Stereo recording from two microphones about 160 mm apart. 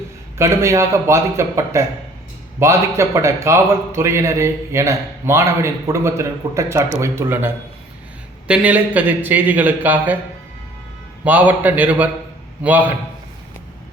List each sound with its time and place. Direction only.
0.3 s a man's voice: 15° right (ahead or behind)
11.3 s a man's voice: 10° right (ahead or behind)